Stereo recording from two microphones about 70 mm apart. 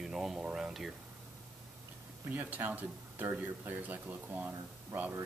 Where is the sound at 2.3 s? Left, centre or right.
Right.